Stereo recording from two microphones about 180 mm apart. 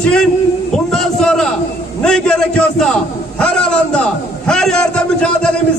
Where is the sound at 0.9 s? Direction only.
5° left (ahead or behind).